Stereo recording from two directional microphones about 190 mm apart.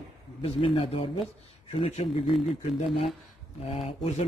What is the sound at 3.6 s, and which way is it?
Speech, 30° left (ahead or behind).